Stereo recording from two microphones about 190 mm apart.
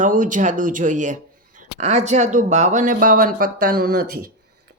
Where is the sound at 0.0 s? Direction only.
45° right (ahead or behind).